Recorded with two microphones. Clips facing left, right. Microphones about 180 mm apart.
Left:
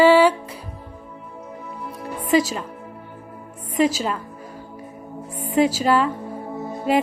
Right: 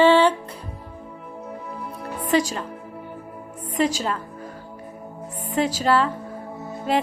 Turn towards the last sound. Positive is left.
turn(degrees=10)  # may be behind; listen again after turning